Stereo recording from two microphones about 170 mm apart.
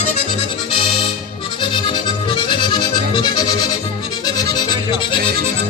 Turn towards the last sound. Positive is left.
turn(degrees=25)  # may be behind; listen again after turning